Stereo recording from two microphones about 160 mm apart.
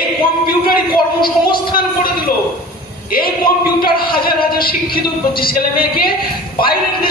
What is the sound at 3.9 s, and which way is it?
A man's voice, 70° left (ahead or behind).